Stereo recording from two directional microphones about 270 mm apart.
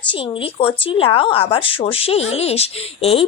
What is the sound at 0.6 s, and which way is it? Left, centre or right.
A woman's voice, centre.